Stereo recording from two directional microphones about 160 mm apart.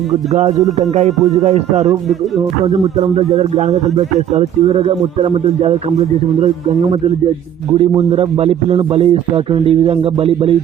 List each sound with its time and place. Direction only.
0.8 s speech: 45° right (ahead or behind)
3.0 s a man's voice: 40° right (ahead or behind)
7.7 s a man's voice: 35° right (ahead or behind)